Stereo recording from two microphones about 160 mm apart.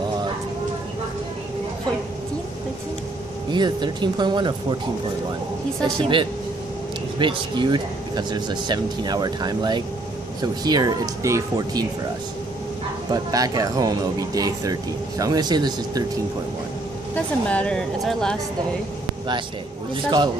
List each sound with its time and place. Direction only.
3.4 s speech: 30° right (ahead or behind)
5.9 s speech: 30° right (ahead or behind)
13.1 s speech: 25° right (ahead or behind)
17.1 s speech: 10° left (ahead or behind)